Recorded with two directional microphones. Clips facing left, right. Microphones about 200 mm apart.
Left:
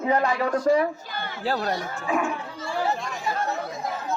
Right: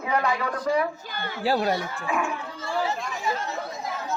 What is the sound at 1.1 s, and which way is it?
Speech, 50° right (ahead or behind).